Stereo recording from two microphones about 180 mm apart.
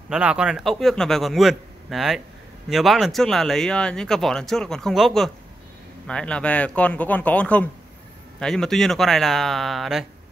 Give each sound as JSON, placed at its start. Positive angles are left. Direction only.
{"t": 0.1, "sound": "speech", "side_deg": -5}